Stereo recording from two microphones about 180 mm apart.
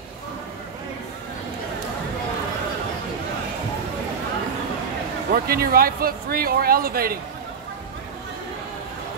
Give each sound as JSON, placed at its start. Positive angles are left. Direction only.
{"t": 5.3, "sound": "speech", "side_deg": -55}